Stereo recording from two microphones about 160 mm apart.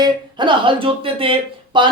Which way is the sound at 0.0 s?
30° right (ahead or behind).